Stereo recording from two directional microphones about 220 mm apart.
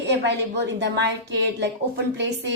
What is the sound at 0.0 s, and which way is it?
A woman's voice, 50° right (ahead or behind).